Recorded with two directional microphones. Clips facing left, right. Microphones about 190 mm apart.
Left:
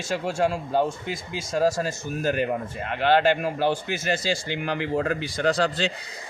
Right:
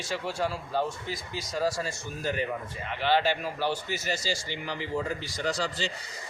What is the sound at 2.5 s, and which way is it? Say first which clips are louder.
Speech: left 6 dB; 55° left (ahead or behind).